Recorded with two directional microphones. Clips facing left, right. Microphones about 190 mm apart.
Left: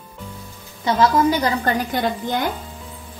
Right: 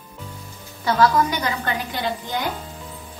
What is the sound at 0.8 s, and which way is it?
Speech, 20° left (ahead or behind).